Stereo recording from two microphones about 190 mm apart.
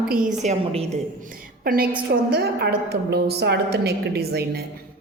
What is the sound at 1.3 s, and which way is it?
A woman's voice, 50° right (ahead or behind).